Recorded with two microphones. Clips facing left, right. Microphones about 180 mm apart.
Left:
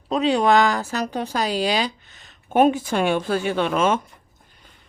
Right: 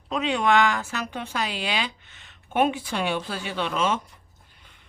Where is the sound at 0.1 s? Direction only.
35° left (ahead or behind); by 4.0 s 50° left (ahead or behind).